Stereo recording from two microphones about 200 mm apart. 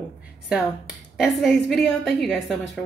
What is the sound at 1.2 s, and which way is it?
A woman's voice, centre (ahead or behind).